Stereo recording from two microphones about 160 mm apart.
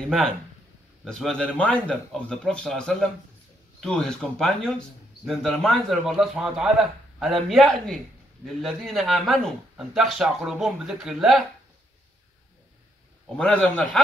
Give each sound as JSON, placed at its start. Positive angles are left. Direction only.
{"t": 1.0, "sound": "speech", "side_deg": 5}
{"t": 13.4, "sound": "a man's voice", "side_deg": 5}